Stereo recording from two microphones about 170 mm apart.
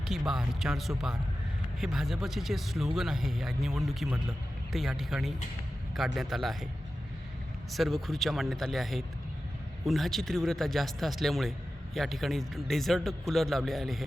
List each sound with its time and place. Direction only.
0.0 s speech: centre (ahead or behind)
7.7 s speech: centre (ahead or behind)